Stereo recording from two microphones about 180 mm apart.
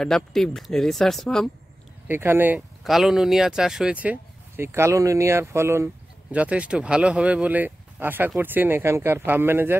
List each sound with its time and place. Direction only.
0.0 s speech: centre (ahead or behind)
2.0 s speech: 10° right (ahead or behind)